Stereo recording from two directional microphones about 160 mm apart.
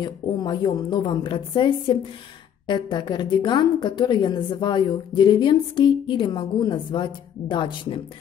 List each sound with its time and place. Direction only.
0.0 s a woman's voice: 30° left (ahead or behind)